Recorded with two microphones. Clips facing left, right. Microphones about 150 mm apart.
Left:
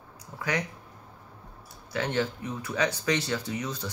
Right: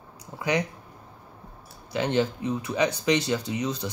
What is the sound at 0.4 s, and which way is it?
Speech, 20° right (ahead or behind).